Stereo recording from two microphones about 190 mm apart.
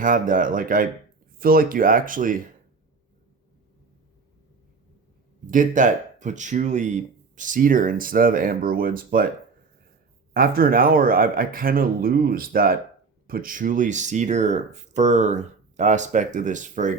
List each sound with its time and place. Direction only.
0.0 s speech: 45° right (ahead or behind)
5.5 s speech: 45° right (ahead or behind)
10.3 s speech: 50° right (ahead or behind)